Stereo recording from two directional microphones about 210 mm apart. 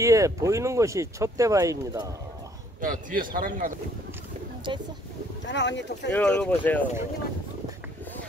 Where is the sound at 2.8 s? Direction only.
40° right (ahead or behind).